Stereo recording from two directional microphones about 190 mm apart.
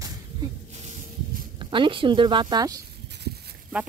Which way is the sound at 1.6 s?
25° right (ahead or behind).